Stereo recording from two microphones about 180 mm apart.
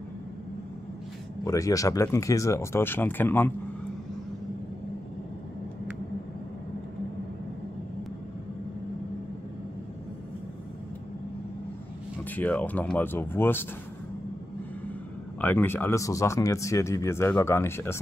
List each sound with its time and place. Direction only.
1.4 s speech: 20° left (ahead or behind)
12.4 s speech: 10° left (ahead or behind)
15.4 s speech: 10° left (ahead or behind)